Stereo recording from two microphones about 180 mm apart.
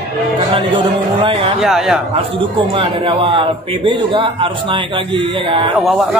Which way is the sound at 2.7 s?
30° right (ahead or behind).